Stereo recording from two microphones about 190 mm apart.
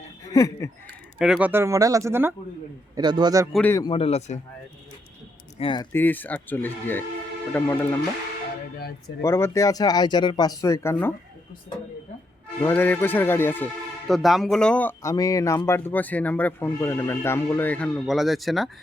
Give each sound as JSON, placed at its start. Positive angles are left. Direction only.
{"t": 0.3, "sound": "speech", "side_deg": 20}
{"t": 1.2, "sound": "a man's voice", "side_deg": -5}
{"t": 3.5, "sound": "speech", "side_deg": 10}
{"t": 3.8, "sound": "speech", "side_deg": 30}
{"t": 5.5, "sound": "speech", "side_deg": 25}
{"t": 5.9, "sound": "speech", "side_deg": 10}
{"t": 9.2, "sound": "speech", "side_deg": 15}
{"t": 12.6, "sound": "speech", "side_deg": 10}
{"t": 14.1, "sound": "speech", "side_deg": 0}